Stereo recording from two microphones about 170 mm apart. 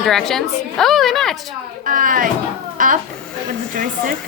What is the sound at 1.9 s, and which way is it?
A woman's voice, 50° right (ahead or behind).